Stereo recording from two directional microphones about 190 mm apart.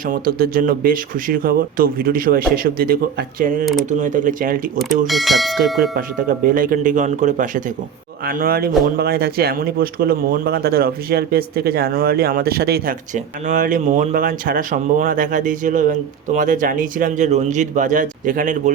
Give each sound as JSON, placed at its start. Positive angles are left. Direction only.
{"t": 0.0, "sound": "speech", "side_deg": -50}
{"t": 4.8, "sound": "speech", "side_deg": 0}
{"t": 5.9, "sound": "speech", "side_deg": -45}